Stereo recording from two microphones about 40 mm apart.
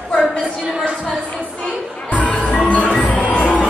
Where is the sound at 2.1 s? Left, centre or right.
Left.